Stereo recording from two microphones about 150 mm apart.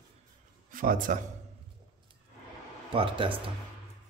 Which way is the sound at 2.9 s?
35° right (ahead or behind).